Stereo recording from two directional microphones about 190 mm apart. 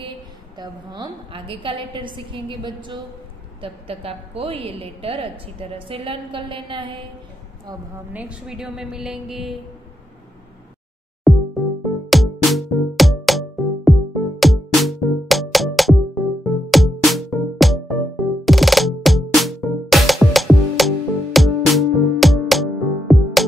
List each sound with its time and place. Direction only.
0.6 s a woman's voice: 20° right (ahead or behind)
8.1 s a woman's voice: 5° right (ahead or behind)
11.3 s music: centre (ahead or behind)